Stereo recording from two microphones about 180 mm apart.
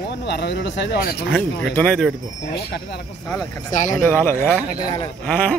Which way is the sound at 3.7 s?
45° left (ahead or behind).